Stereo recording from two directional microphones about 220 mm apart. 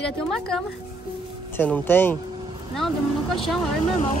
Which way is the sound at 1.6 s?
10° left (ahead or behind).